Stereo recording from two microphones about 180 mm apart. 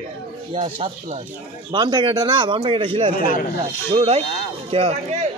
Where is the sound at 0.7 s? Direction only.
30° right (ahead or behind).